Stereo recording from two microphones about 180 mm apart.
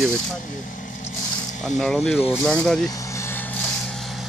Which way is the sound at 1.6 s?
5° left (ahead or behind).